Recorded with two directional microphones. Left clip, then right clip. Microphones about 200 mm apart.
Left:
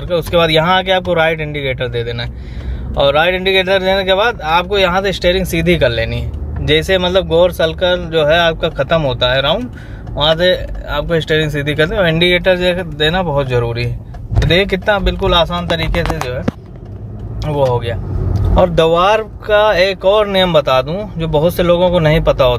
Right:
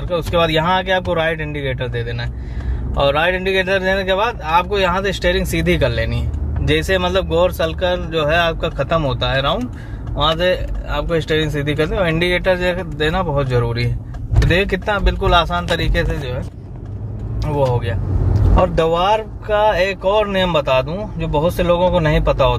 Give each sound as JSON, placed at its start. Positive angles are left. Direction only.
{"t": 0.1, "sound": "speech", "side_deg": 25}
{"t": 17.5, "sound": "speech", "side_deg": 20}